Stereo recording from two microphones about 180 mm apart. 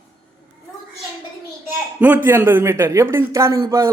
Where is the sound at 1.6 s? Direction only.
10° right (ahead or behind).